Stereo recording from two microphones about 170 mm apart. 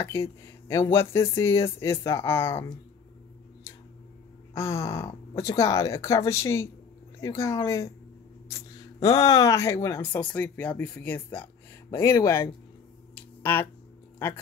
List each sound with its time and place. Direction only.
0.1 s speech: 15° left (ahead or behind)
4.6 s speech: 15° left (ahead or behind)
13.4 s a sound: 10° left (ahead or behind)